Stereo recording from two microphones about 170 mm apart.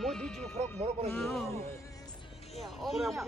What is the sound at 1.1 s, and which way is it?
Speech, centre (ahead or behind).